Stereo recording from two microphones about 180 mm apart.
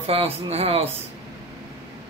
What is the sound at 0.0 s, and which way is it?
Speech, 35° right (ahead or behind).